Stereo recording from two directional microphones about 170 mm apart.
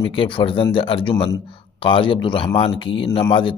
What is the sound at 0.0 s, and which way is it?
Speech, 30° left (ahead or behind).